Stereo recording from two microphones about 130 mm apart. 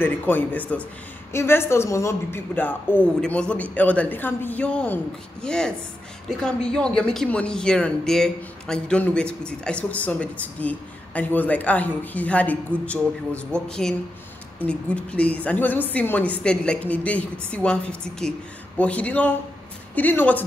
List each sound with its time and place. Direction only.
0.0 s a man's voice: 15° left (ahead or behind)